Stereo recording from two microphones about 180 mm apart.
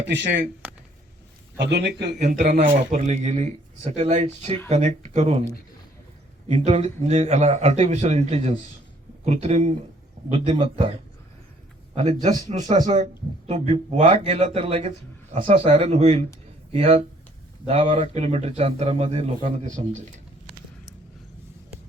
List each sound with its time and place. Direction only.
0.0 s speech: 80° right
1.5 s a man's voice: 70° right (ahead or behind)
2.1 s a man's voice: 45° right (ahead or behind)
6.5 s a man's voice: 35° right (ahead or behind)
11.9 s a man's voice: 40° right (ahead or behind)